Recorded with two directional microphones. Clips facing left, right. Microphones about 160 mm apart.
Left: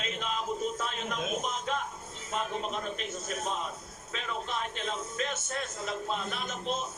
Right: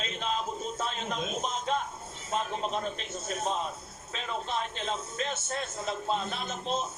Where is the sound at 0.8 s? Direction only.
30° right (ahead or behind).